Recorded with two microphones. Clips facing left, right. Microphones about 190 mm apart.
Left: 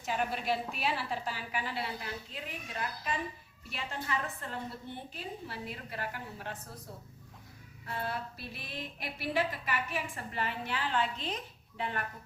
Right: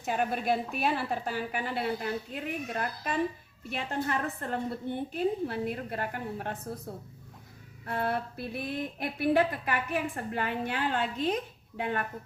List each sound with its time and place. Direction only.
0.0 s speech: 50° right (ahead or behind)
7.9 s speech: 55° right (ahead or behind)